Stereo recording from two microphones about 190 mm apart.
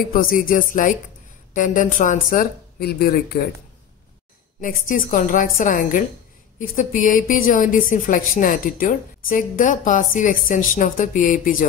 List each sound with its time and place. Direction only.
0.1 s speech: 50° left (ahead or behind)
4.6 s speech: 45° left (ahead or behind)